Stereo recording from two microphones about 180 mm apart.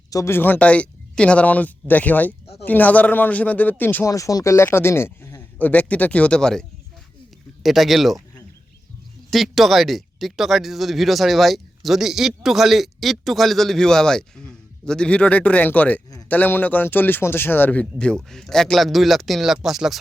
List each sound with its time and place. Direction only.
0.1 s speech: 15° left (ahead or behind); by 8.2 s centre (ahead or behind)
9.3 s speech: centre (ahead or behind)